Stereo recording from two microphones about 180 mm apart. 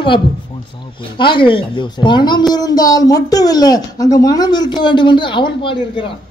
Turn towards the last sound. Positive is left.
turn(degrees=30)  # may be behind; listen again after turning